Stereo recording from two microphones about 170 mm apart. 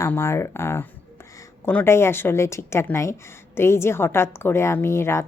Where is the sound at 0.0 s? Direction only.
15° left (ahead or behind).